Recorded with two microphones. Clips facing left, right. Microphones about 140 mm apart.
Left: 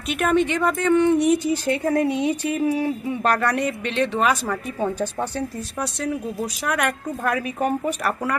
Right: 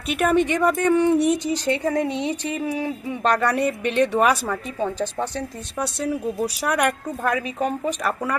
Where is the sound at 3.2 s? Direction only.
Centre (ahead or behind).